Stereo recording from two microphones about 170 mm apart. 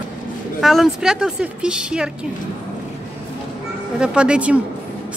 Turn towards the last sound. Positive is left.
turn(degrees=-5)  # may be behind; listen again after turning